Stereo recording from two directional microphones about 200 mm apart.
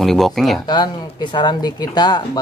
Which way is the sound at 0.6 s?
20° left (ahead or behind).